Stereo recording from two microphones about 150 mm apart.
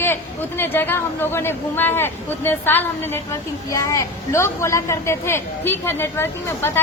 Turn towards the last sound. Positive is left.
turn(degrees=15)  # may be behind; listen again after turning